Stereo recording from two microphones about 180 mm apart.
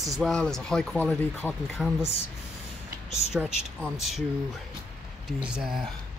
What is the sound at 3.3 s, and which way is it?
Speech, 5° right (ahead or behind).